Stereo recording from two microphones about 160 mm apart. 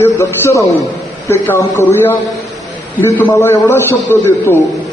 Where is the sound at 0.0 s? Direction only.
15° left (ahead or behind).